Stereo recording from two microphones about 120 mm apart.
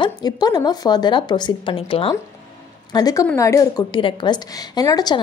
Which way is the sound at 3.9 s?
40° left (ahead or behind).